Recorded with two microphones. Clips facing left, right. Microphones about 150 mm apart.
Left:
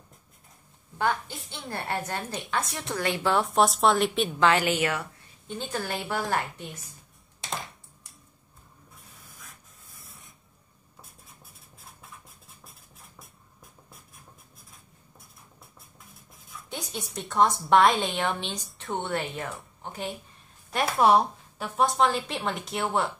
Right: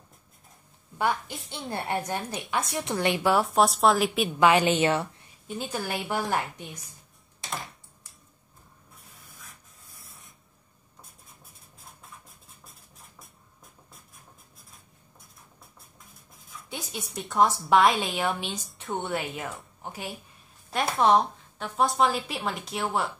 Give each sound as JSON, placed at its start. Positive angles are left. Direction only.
{"t": 0.9, "sound": "a woman's voice", "side_deg": -10}
{"t": 3.3, "sound": "a woman's voice", "side_deg": 0}
{"t": 5.6, "sound": "a woman's voice", "side_deg": -10}
{"t": 9.9, "sound": "spray", "side_deg": 0}
{"t": 16.5, "sound": "a woman's voice", "side_deg": 0}
{"t": 20.7, "sound": "a woman's voice", "side_deg": 5}